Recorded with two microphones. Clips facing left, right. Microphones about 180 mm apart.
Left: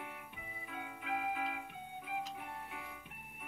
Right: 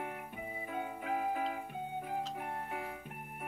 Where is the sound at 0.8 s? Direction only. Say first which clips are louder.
Right 4 dB; 45° right (ahead or behind).